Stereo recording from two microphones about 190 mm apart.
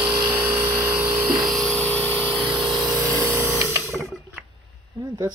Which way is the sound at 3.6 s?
15° right (ahead or behind).